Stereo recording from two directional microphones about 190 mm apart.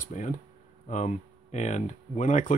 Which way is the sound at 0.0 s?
40° left (ahead or behind).